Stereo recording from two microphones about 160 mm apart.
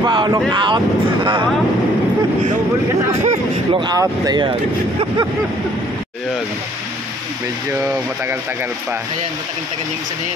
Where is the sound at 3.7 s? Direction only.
25° right (ahead or behind).